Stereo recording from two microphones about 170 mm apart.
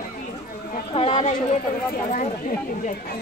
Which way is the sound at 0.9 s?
40° left (ahead or behind).